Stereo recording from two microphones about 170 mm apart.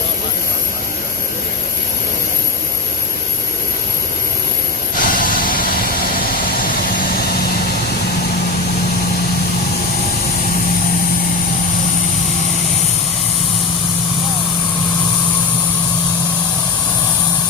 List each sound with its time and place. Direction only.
4.9 s vehicle: 50° left (ahead or behind)